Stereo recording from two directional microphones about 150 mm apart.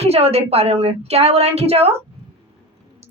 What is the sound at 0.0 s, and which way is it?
A woman's voice, 45° right (ahead or behind).